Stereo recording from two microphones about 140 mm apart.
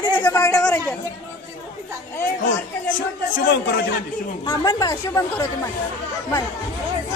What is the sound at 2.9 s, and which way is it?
Speech, 75° left (ahead or behind).